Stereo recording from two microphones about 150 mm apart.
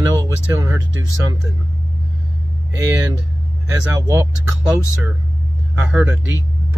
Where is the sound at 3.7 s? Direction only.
20° right (ahead or behind).